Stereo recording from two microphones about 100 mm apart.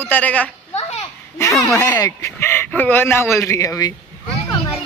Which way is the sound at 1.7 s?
20° left (ahead or behind).